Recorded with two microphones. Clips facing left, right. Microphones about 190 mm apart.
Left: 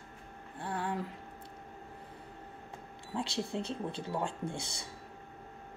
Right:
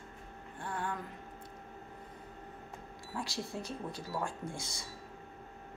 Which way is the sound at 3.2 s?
25° left (ahead or behind).